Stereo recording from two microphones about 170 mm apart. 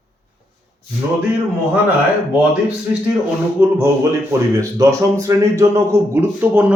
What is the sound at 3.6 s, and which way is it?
A man's voice, 15° right (ahead or behind).